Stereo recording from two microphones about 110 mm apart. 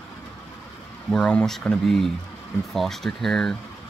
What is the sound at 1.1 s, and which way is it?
Speech, 5° left (ahead or behind).